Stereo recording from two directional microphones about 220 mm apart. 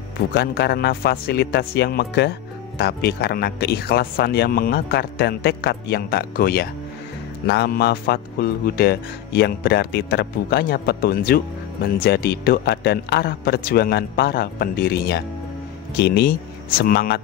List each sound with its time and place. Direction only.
0.3 s speech: 50° left (ahead or behind)